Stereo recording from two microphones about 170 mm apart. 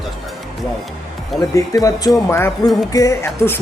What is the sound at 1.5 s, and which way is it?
Speech, 20° left (ahead or behind).